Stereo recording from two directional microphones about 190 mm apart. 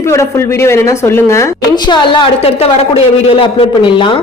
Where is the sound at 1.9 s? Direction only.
30° left (ahead or behind).